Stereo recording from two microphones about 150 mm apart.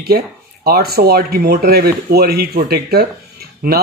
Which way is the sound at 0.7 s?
90° right.